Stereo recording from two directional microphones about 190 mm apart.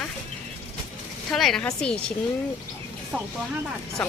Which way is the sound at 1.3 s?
Centre (ahead or behind).